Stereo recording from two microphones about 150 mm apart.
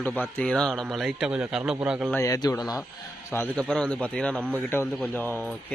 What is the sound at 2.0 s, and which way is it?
Speech, 20° left (ahead or behind).